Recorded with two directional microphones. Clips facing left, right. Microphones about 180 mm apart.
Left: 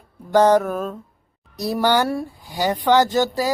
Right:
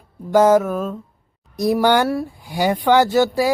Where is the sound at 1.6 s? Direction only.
15° right (ahead or behind).